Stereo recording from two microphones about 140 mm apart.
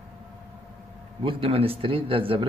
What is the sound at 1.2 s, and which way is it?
Speech, 40° right (ahead or behind).